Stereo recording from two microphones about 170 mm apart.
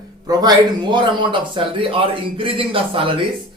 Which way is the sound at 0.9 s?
30° right (ahead or behind).